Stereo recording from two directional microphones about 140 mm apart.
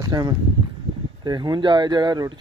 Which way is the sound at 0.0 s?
30° right (ahead or behind).